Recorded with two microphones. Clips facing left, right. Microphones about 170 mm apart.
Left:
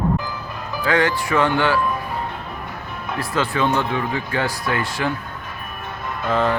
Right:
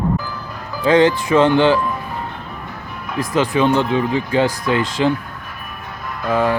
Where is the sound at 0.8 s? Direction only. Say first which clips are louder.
Right 6 dB; 20° right (ahead or behind).